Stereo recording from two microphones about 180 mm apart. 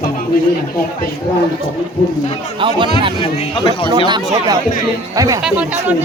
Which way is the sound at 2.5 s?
30° right (ahead or behind).